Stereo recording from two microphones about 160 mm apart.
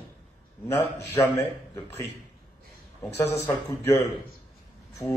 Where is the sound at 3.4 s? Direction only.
20° left (ahead or behind).